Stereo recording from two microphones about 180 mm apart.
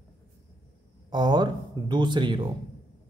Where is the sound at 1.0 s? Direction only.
25° right (ahead or behind).